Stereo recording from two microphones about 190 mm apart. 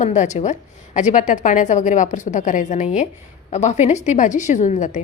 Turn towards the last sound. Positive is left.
turn(degrees=40)  # may be behind; listen again after turning